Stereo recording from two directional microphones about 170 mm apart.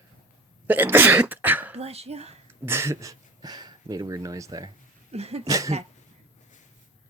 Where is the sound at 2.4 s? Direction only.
15° right (ahead or behind).